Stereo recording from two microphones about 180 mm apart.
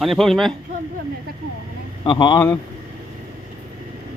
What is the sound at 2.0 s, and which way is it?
Speech, 25° left (ahead or behind).